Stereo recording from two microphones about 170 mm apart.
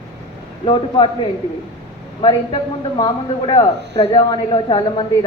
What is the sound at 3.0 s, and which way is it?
Speech, 25° left (ahead or behind).